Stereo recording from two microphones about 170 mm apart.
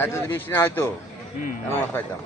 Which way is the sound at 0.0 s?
15° left (ahead or behind).